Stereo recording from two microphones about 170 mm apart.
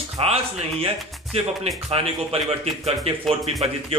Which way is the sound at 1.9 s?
35° right (ahead or behind).